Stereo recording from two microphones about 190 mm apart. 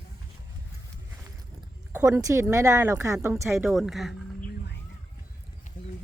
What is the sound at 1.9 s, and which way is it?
Speech, 15° right (ahead or behind).